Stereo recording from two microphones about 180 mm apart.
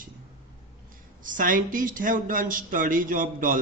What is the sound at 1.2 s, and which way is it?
Speech, 50° right (ahead or behind).